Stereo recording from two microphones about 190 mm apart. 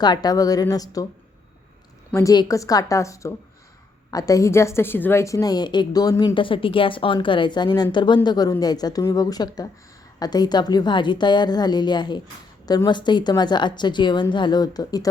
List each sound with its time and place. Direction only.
0.0 s a woman's voice: 20° left (ahead or behind)
2.1 s a woman's voice: 20° left (ahead or behind)